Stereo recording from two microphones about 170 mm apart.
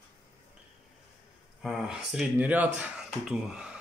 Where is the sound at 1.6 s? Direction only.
Centre (ahead or behind).